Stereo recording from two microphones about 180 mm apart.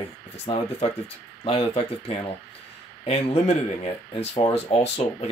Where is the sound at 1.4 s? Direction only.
30° left (ahead or behind).